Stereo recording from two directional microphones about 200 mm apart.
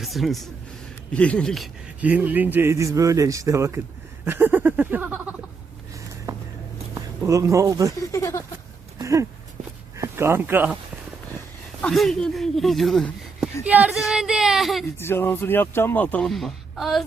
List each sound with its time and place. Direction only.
0.0 s speech: centre (ahead or behind)
6.3 s a sound: 15° right (ahead or behind)
6.9 s speech: 15° right (ahead or behind)
8.1 s speech: 15° left (ahead or behind)
9.0 s a sound: 15° right (ahead or behind)
10.0 s speech: 15° right (ahead or behind)
11.8 s speech: centre (ahead or behind)
14.9 s speech: 10° left (ahead or behind)